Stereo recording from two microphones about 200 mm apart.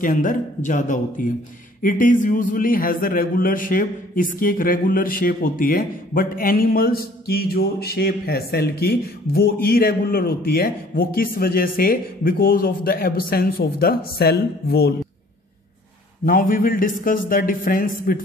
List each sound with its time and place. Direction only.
0.0 s a man's voice: 40° left (ahead or behind)
16.3 s a man's voice: 45° left (ahead or behind)